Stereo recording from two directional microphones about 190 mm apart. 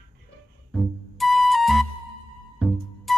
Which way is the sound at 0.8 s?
Centre (ahead or behind).